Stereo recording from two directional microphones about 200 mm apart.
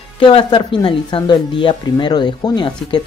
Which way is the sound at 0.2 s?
25° left (ahead or behind).